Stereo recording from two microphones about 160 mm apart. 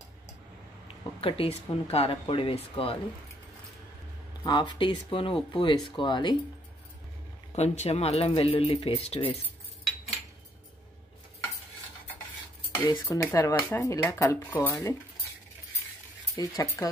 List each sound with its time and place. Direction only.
0.8 s speech: 35° left (ahead or behind)
4.4 s speech: 25° left (ahead or behind)
7.5 s speech: 45° left (ahead or behind)
12.8 s speech: 20° left (ahead or behind)
16.3 s speech: 20° left (ahead or behind)